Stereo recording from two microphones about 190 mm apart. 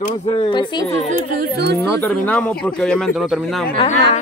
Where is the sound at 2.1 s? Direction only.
5° left (ahead or behind).